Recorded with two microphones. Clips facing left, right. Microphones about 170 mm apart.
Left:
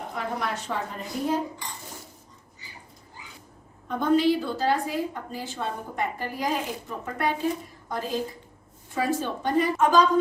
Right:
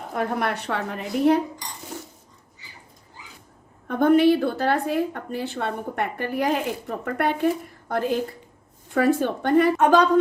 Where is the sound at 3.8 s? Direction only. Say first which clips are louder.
Right 5 dB; 60° right (ahead or behind).